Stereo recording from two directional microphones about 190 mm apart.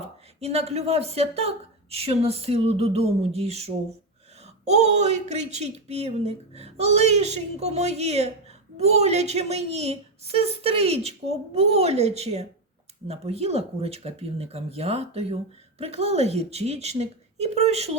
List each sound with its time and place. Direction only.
0.0 s speech: 35° right (ahead or behind)